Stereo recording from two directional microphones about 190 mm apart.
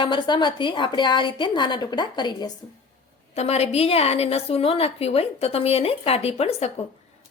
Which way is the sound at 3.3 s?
35° left (ahead or behind).